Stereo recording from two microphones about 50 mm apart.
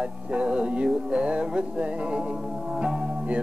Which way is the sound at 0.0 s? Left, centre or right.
Right.